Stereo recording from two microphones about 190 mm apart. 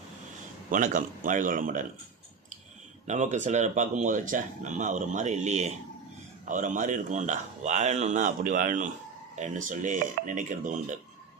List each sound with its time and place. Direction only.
0.7 s a man's voice: 45° right (ahead or behind)
3.1 s speech: 40° right (ahead or behind)